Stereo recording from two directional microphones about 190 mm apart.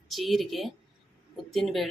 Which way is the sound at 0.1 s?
Centre (ahead or behind).